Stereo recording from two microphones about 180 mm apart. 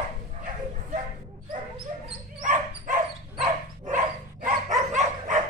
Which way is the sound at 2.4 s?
45° right (ahead or behind).